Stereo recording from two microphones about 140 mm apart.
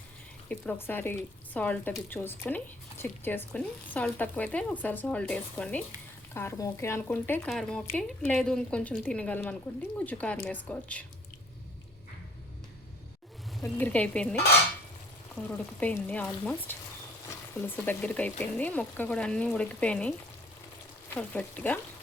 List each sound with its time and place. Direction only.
0.4 s speech: 10° left (ahead or behind)
6.3 s speech: 20° left (ahead or behind)
7.5 s speech: 5° left (ahead or behind)
13.6 s speech: 15° left (ahead or behind)